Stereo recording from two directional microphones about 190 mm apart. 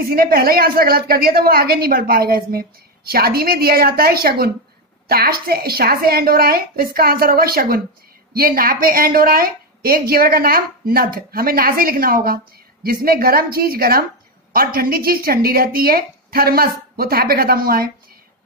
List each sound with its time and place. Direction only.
0.0 s a woman's voice: 50° right (ahead or behind)